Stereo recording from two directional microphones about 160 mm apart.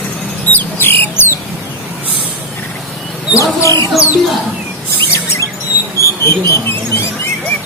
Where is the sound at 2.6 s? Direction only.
Centre (ahead or behind).